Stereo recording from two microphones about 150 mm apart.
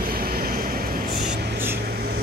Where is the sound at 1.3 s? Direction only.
90° right.